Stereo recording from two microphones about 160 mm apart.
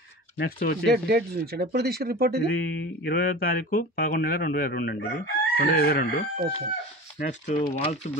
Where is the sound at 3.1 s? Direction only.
65° left (ahead or behind).